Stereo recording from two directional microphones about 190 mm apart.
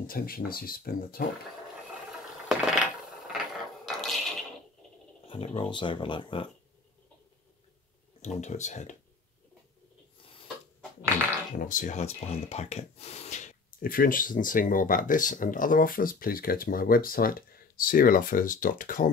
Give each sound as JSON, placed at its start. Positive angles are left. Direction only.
{"t": 0.0, "sound": "speech", "side_deg": 50}
{"t": 2.4, "sound": "mechanisms", "side_deg": 0}
{"t": 3.8, "sound": "a sound", "side_deg": 0}
{"t": 5.3, "sound": "speech", "side_deg": 30}
{"t": 8.2, "sound": "speech", "side_deg": 35}
{"t": 11.5, "sound": "speech", "side_deg": 45}